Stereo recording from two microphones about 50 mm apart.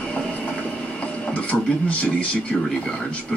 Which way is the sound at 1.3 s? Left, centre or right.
Left.